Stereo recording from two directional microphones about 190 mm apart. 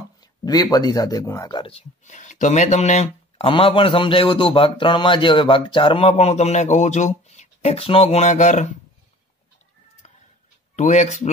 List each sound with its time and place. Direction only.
0.2 s speech: 20° left (ahead or behind); by 8.6 s 40° left (ahead or behind)
10.8 s speech: 40° left (ahead or behind)